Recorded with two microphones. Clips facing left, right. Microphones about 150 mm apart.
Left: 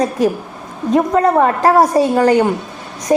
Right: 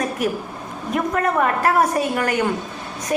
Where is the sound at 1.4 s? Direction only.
35° left (ahead or behind).